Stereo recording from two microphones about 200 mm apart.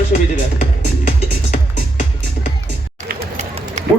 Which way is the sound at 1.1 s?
35° left (ahead or behind).